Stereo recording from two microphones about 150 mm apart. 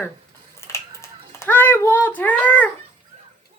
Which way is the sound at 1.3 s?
15° left (ahead or behind).